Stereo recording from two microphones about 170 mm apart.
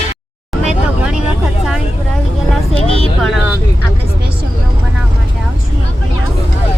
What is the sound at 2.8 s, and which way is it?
Speech, 35° left (ahead or behind).